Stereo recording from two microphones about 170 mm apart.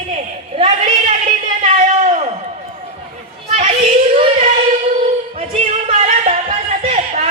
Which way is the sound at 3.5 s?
30° right (ahead or behind).